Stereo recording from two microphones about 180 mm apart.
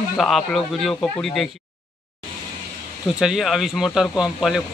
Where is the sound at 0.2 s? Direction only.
Centre (ahead or behind).